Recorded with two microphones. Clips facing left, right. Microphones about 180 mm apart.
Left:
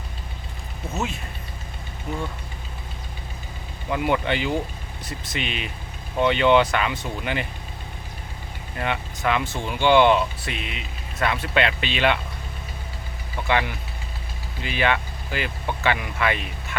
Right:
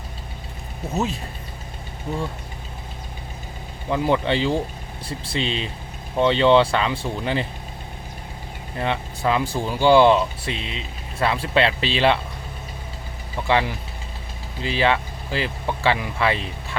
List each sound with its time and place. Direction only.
0.9 s speech: 35° right (ahead or behind)
3.8 s speech: 30° right (ahead or behind)
8.8 s speech: 30° right (ahead or behind)
13.5 s speech: 30° right (ahead or behind)